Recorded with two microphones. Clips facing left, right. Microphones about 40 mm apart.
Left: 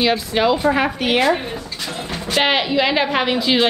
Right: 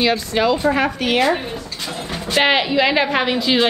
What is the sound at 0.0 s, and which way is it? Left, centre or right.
A woman's voice, centre.